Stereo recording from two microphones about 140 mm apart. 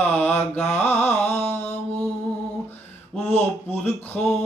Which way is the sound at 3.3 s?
10° left (ahead or behind).